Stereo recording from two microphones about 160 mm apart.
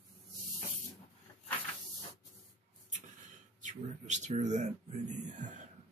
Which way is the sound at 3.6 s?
50° right (ahead or behind).